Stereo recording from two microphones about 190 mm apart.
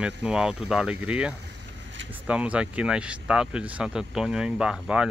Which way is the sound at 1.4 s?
75° right (ahead or behind).